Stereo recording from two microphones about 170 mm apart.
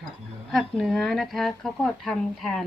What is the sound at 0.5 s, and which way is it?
Speech, centre (ahead or behind).